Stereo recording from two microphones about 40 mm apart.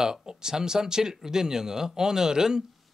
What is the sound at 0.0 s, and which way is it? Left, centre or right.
Speech, centre.